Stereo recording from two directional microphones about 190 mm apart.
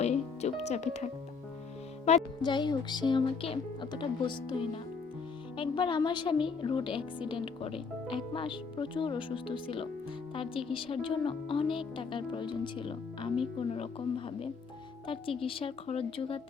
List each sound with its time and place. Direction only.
0.0 s music: 35° left (ahead or behind)
0.7 s speech: 35° left (ahead or behind)